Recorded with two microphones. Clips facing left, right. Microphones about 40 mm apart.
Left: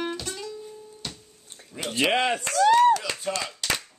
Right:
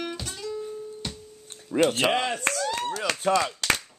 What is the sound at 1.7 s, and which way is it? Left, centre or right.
Speech, right.